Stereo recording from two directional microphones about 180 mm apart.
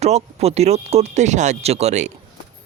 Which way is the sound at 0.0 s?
35° right (ahead or behind).